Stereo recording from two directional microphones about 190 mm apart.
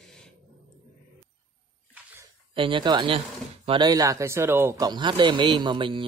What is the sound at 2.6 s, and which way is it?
Speech, 25° right (ahead or behind).